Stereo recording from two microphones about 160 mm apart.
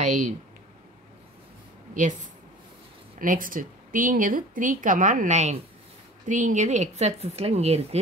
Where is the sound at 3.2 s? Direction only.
60° right (ahead or behind).